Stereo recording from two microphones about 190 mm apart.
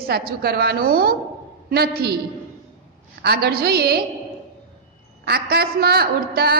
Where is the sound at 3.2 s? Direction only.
55° right (ahead or behind).